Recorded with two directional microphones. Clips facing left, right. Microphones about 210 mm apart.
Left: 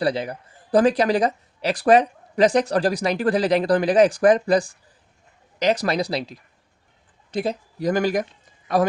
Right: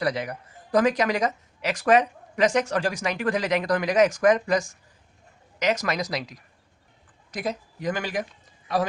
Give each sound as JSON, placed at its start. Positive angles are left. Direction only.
{"t": 0.0, "sound": "speech", "side_deg": 30}